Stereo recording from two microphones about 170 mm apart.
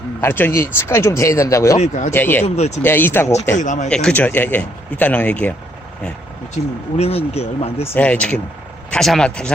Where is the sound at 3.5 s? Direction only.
45° left (ahead or behind).